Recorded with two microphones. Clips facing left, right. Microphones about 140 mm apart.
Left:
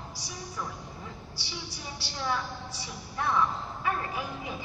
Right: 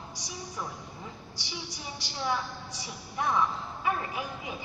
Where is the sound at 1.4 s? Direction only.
15° right (ahead or behind).